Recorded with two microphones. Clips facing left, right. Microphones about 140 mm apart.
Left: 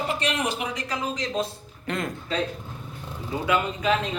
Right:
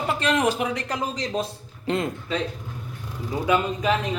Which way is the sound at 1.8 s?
25° right (ahead or behind).